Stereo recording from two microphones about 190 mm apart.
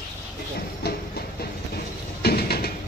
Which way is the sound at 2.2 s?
55° left (ahead or behind).